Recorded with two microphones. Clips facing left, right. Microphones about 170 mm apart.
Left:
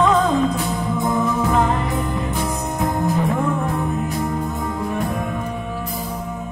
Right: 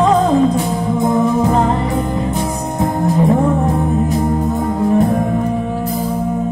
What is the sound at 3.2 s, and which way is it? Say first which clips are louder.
Music: right 7 dB; 35° right (ahead or behind).